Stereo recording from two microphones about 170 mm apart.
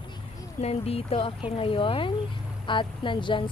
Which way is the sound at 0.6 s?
35° left (ahead or behind).